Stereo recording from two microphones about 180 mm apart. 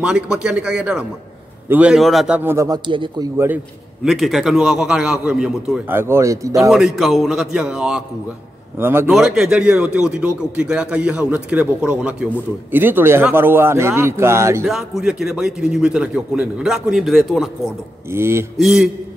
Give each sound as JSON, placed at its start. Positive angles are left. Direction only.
{"t": 0.0, "sound": "a man's voice", "side_deg": -5}
{"t": 2.9, "sound": "a man's voice", "side_deg": -25}
{"t": 4.0, "sound": "a man's voice", "side_deg": 0}
{"t": 6.7, "sound": "a man's voice", "side_deg": 0}
{"t": 14.7, "sound": "a man's voice", "side_deg": 0}
{"t": 18.1, "sound": "speech", "side_deg": -15}
{"t": 18.6, "sound": "a man's voice", "side_deg": 0}